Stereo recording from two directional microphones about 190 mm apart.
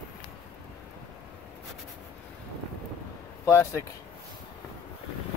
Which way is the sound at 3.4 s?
15° left (ahead or behind).